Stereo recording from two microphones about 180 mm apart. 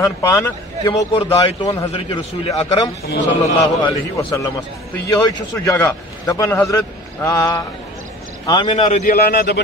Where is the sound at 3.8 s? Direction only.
15° left (ahead or behind).